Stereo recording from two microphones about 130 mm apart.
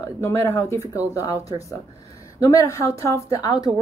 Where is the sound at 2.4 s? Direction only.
25° left (ahead or behind).